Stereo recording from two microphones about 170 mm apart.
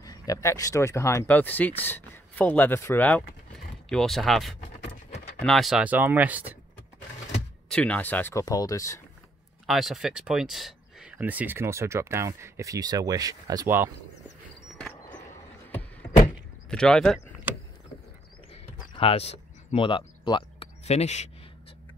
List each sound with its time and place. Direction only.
0.3 s speech: 20° left (ahead or behind); by 6.5 s 10° right (ahead or behind)
7.7 s speech: 10° left (ahead or behind)
9.7 s speech: centre (ahead or behind); by 13.8 s 15° right (ahead or behind)
16.7 s speech: 5° left (ahead or behind)
18.9 s speech: 35° left (ahead or behind)
20.8 s speech: 40° left (ahead or behind)